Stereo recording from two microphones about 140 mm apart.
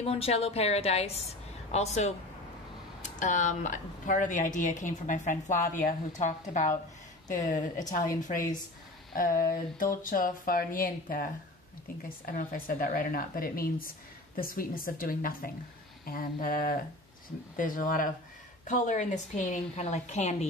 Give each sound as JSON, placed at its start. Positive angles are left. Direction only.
{"t": 0.0, "sound": "a woman's voice", "side_deg": 45}
{"t": 12.3, "sound": "speech", "side_deg": 80}
{"t": 17.6, "sound": "speech", "side_deg": 75}
{"t": 18.7, "sound": "a woman's voice", "side_deg": 65}